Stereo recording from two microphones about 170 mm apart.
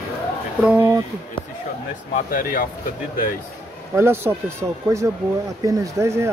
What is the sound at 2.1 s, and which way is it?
Speech, 55° left (ahead or behind).